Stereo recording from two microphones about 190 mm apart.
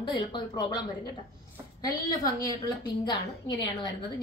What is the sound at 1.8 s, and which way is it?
Speech, 20° left (ahead or behind).